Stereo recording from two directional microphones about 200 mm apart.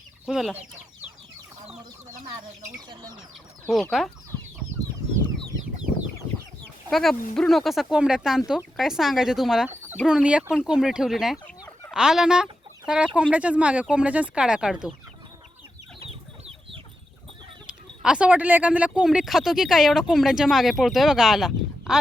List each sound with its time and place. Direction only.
0.3 s speech: 5° right (ahead or behind)
2.6 s speech: 20° right (ahead or behind)
3.7 s speech: centre (ahead or behind)
6.9 s speech: centre (ahead or behind)
17.7 s speech: 5° right (ahead or behind)